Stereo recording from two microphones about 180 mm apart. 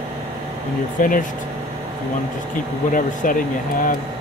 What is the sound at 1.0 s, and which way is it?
Speech, 45° left (ahead or behind).